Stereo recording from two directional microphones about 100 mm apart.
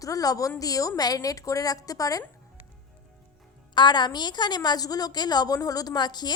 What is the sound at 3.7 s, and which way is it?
A woman's voice, 45° left (ahead or behind).